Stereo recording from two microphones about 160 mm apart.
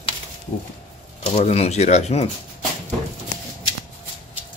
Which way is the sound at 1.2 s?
45° left (ahead or behind).